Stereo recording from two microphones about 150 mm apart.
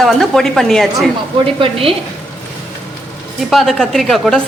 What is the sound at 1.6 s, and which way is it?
Speech, 40° right (ahead or behind).